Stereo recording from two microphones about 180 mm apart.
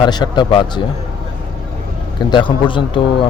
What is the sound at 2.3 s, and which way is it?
Speech, 25° left (ahead or behind).